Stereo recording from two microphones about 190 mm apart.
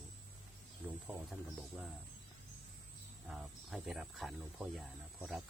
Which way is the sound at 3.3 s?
Centre (ahead or behind).